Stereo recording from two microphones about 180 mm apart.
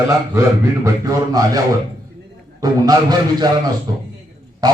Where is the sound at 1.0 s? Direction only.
20° right (ahead or behind).